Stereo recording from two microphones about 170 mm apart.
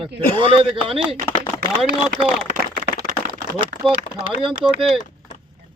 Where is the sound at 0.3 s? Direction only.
30° right (ahead or behind).